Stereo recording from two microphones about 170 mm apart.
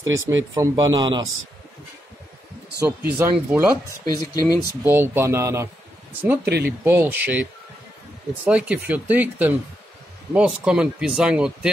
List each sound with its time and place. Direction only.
0.0 s speech: 90° right
0.6 s speech: 25° right (ahead or behind)
2.8 s speech: 15° right (ahead or behind)
4.0 s speech: 20° left (ahead or behind)
4.8 s speech: 15° right (ahead or behind)
6.4 s speech: 70° right (ahead or behind)
6.8 s speech: 15° right (ahead or behind)
8.5 s speech: 5° right (ahead or behind)